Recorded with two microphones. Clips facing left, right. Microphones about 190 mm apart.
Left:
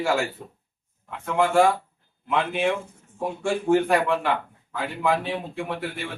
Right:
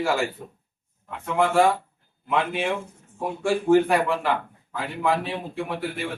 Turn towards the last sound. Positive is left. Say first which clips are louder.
# right 1 dB
turn(degrees=0)  # may be behind; listen again after turning